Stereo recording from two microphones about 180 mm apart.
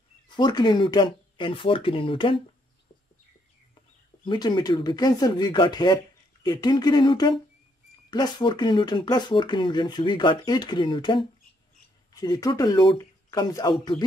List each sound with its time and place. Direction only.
0.4 s speech: 25° left (ahead or behind)
4.2 s speech: 25° left (ahead or behind)